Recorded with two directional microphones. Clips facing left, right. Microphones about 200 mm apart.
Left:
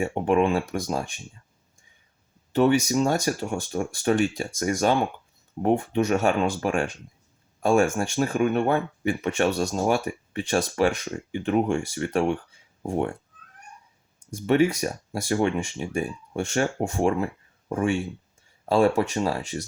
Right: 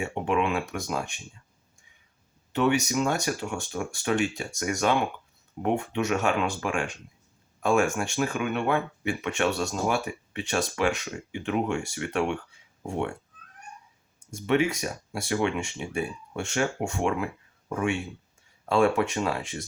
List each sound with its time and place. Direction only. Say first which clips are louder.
0.0 s speech: left 5 dB; 45° left (ahead or behind)
2.6 s speech: left 4 dB; 35° left (ahead or behind)
14.4 s speech: left 4 dB; 40° left (ahead or behind)